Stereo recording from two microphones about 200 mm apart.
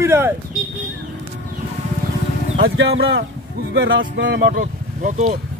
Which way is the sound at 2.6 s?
75° right (ahead or behind).